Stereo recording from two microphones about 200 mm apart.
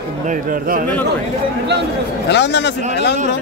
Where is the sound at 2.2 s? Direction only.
60° left (ahead or behind).